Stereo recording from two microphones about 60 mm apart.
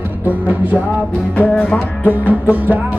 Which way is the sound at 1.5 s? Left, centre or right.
Centre.